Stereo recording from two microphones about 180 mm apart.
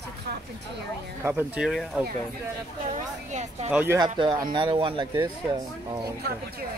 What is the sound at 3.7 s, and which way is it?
Speech, 10° right (ahead or behind).